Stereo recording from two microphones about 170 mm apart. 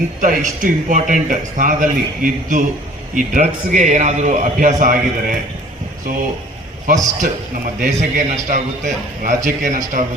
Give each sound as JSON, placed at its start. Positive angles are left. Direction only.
{"t": 0.2, "sound": "a man's voice", "side_deg": -50}
{"t": 6.8, "sound": "a man's voice", "side_deg": -50}